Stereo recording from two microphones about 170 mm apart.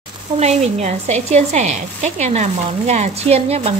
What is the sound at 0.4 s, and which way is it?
Speech, 40° right (ahead or behind).